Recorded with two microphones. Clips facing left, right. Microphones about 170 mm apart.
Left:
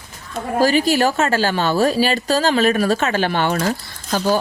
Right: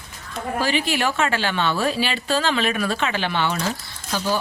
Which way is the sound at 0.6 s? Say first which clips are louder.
Left 8 dB; 40° left (ahead or behind).